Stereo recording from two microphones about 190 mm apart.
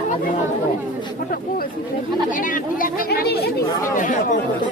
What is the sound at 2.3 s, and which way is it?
Speech, 45° left (ahead or behind).